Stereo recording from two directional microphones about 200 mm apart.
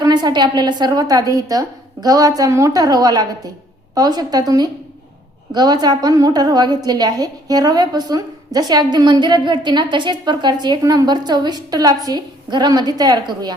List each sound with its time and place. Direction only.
0.0 s a woman's voice: 20° right (ahead or behind)